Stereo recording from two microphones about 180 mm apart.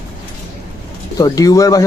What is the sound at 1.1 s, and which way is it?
Speech, 20° left (ahead or behind).